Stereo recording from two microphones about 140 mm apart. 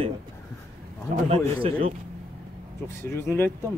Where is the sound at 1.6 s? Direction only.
45° right (ahead or behind).